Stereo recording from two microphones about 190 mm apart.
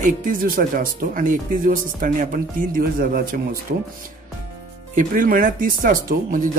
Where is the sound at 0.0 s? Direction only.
45° right (ahead or behind).